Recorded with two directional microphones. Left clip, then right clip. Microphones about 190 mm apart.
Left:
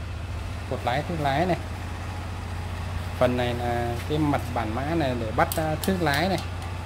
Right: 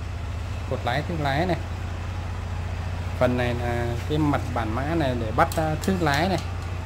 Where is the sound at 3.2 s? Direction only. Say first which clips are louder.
Even; centre (ahead or behind).